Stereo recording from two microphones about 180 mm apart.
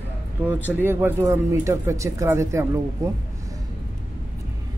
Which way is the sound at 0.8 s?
15° right (ahead or behind).